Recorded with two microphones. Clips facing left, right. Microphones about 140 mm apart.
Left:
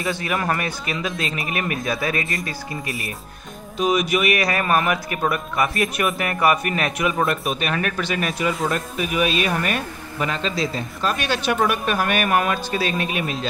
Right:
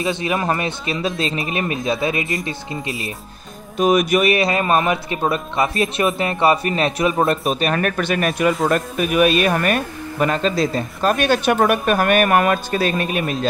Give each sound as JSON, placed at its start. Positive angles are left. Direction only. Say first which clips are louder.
{"t": 0.0, "sound": "a man's voice", "louder": "right 3 dB", "side_deg": -25}
{"t": 3.7, "sound": "speech", "louder": "right 4 dB", "side_deg": -50}
{"t": 4.2, "sound": "a man's voice", "louder": "right 4 dB", "side_deg": -30}
{"t": 7.7, "sound": "speech", "louder": "right 4 dB", "side_deg": -50}